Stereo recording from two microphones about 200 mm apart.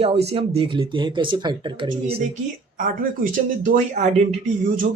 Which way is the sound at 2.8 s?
40° right (ahead or behind).